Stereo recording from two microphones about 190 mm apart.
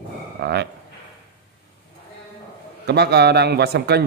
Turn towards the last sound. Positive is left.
turn(degrees=-60)  # may be behind; listen again after turning